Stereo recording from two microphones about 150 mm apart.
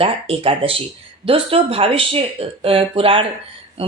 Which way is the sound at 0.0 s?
40° right (ahead or behind).